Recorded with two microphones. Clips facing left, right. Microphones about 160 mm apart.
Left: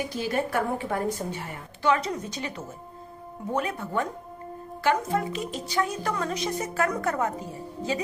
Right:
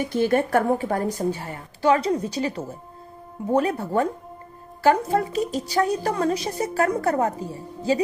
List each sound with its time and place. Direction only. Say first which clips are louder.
0.1 s a woman's voice: right 7 dB; 55° right (ahead or behind); by 7.3 s 35° right (ahead or behind)